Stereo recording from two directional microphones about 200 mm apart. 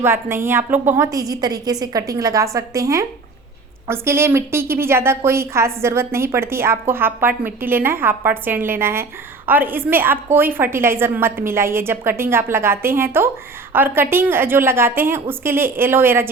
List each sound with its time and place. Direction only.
0.0 s a woman's voice: 10° right (ahead or behind)